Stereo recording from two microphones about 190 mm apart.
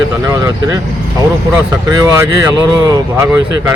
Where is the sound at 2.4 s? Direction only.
15° right (ahead or behind).